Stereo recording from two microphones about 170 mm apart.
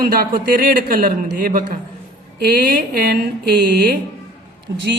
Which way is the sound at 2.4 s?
70° right (ahead or behind).